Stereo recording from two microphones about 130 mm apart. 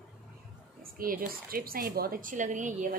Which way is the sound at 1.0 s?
90° right.